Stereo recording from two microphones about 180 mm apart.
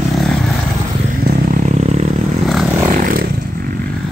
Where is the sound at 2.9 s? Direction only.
50° right (ahead or behind).